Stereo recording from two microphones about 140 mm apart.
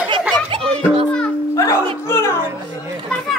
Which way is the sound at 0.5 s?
45° right (ahead or behind).